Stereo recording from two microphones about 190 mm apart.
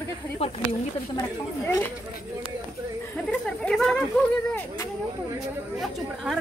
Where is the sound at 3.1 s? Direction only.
5° left (ahead or behind).